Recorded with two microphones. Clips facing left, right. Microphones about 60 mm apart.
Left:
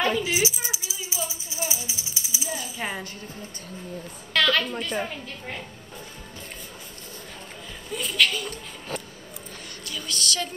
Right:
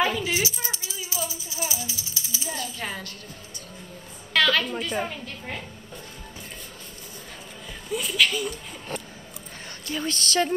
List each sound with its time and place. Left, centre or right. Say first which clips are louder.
0.2 s rattle: left 1 dB; centre
1.5 s music: even; left
2.4 s coin: left 1 dB; centre
4.3 s a woman's voice: right 1 dB; centre
7.9 s speech: right 1 dB; centre
9.8 s a woman's voice: right 3 dB; right